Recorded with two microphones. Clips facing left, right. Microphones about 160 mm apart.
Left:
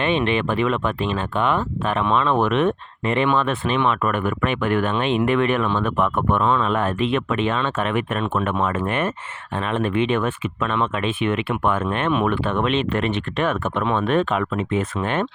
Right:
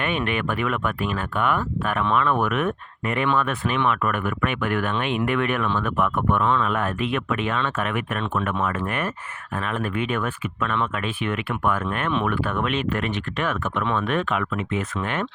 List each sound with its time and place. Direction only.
0.0 s speech: 25° left (ahead or behind)